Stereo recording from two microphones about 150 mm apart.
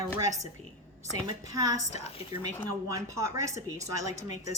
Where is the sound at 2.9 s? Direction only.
20° right (ahead or behind).